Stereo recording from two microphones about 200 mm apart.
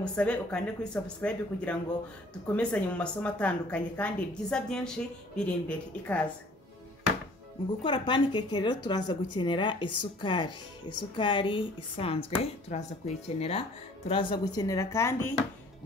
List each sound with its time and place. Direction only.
0.0 s a woman's voice: 5° left (ahead or behind)
7.8 s a woman's voice: 25° left (ahead or behind)